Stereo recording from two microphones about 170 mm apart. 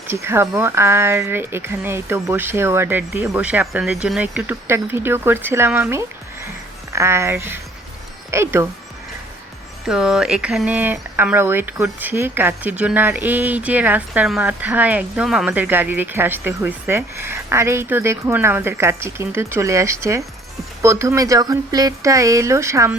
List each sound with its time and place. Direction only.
0.1 s speech: 15° right (ahead or behind)
9.8 s speech: 5° right (ahead or behind)